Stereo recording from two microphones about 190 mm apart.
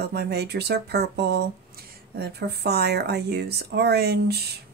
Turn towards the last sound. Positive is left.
turn(degrees=-60)  # may be behind; listen again after turning